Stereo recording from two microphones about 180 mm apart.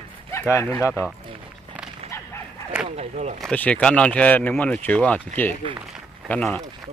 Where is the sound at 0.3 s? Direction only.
15° left (ahead or behind).